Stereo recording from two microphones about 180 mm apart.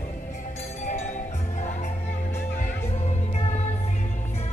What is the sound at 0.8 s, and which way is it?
Music, 45° left (ahead or behind).